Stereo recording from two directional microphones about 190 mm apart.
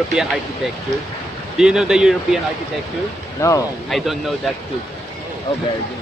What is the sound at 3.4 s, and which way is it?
Speech, 15° left (ahead or behind).